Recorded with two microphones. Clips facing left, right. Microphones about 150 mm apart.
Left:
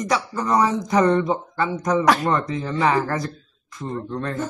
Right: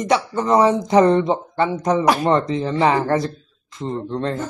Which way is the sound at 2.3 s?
25° right (ahead or behind).